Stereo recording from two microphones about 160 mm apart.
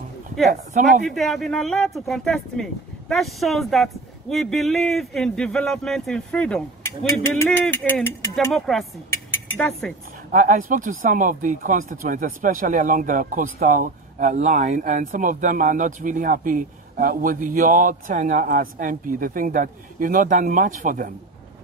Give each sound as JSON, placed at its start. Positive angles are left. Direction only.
{"t": 1.0, "sound": "speech", "side_deg": 0}
{"t": 8.5, "sound": "speech", "side_deg": 0}
{"t": 10.3, "sound": "speech", "side_deg": -55}